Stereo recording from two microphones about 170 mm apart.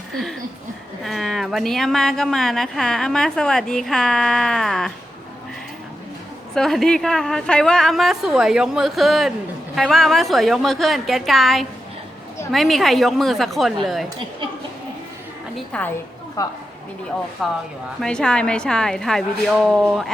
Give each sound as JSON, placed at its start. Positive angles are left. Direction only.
{"t": 1.0, "sound": "speech", "side_deg": 0}
{"t": 6.5, "sound": "speech", "side_deg": 0}
{"t": 15.7, "sound": "a woman's voice", "side_deg": 5}
{"t": 16.4, "sound": "a woman's voice", "side_deg": 20}
{"t": 17.4, "sound": "speech", "side_deg": 0}